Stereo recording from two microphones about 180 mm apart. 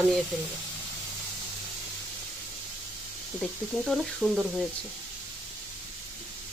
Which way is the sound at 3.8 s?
Centre (ahead or behind).